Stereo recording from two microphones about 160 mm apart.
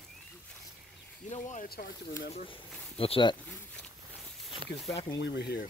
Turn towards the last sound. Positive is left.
turn(degrees=85)